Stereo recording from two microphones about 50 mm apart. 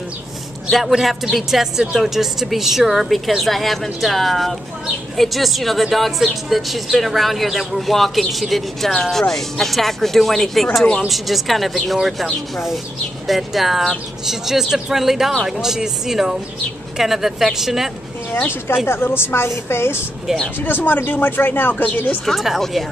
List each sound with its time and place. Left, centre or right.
0.7 s a woman's voice: centre
13.3 s speech: centre
18.4 s speech: left
20.6 s speech: left
22.2 s a woman's voice: centre